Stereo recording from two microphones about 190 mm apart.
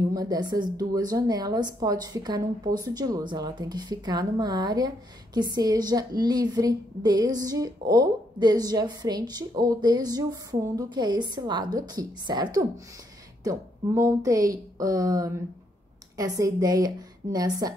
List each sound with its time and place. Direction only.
0.1 s a woman's voice: 20° right (ahead or behind)